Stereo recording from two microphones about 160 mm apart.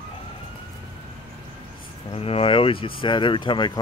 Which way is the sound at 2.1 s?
35° left (ahead or behind).